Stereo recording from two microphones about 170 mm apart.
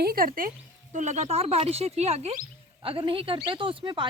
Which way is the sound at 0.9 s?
45° right (ahead or behind).